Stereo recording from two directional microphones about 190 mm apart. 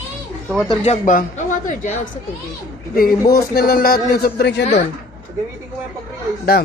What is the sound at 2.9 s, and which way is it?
A man's voice, 50° left (ahead or behind).